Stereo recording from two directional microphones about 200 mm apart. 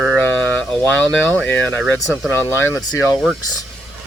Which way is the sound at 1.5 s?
10° left (ahead or behind).